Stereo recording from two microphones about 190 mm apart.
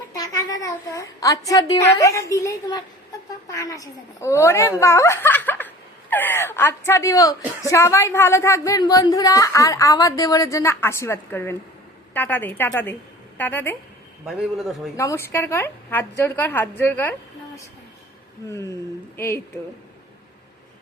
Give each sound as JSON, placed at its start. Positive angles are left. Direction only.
{"t": 0.2, "sound": "a sound", "side_deg": 20}
{"t": 2.0, "sound": "a woman's voice", "side_deg": 15}
{"t": 14.9, "sound": "a woman's voice", "side_deg": 15}
{"t": 18.4, "sound": "a woman's voice", "side_deg": 15}